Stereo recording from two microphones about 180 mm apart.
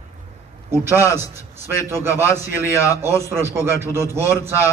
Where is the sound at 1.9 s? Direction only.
15° right (ahead or behind).